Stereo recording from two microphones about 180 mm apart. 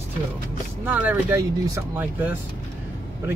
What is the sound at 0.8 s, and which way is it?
Speech, 10° right (ahead or behind).